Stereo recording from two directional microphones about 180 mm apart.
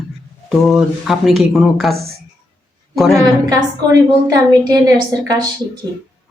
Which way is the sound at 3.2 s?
20° right (ahead or behind).